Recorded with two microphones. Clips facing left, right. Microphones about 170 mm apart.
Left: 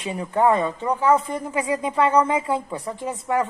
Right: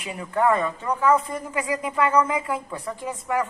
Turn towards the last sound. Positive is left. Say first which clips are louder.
# left 2 dB
turn(degrees=25)  # may be behind; listen again after turning